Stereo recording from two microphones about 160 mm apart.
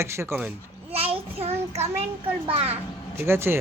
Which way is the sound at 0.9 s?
35° right (ahead or behind).